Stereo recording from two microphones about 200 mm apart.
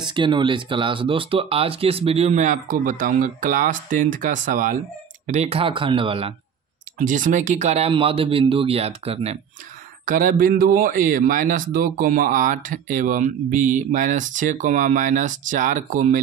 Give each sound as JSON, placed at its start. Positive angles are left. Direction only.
{"t": 0.0, "sound": "a man's voice", "side_deg": -20}
{"t": 7.0, "sound": "a man's voice", "side_deg": -40}
{"t": 10.0, "sound": "a man's voice", "side_deg": -40}